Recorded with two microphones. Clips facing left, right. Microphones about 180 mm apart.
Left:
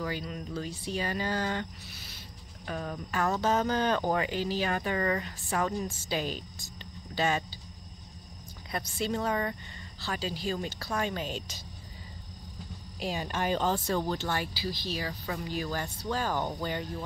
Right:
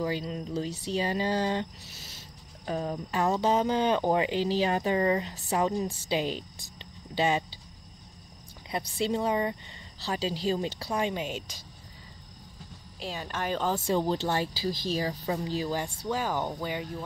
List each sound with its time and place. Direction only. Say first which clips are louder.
0.0 s speech: right 4 dB; 30° right (ahead or behind)
8.7 s speech: right 3 dB; 20° right (ahead or behind)
13.0 s speech: left 2 dB; 10° left (ahead or behind)
13.8 s speech: right 3 dB; 30° right (ahead or behind)
16.1 s speech: right 1 dB; 15° right (ahead or behind)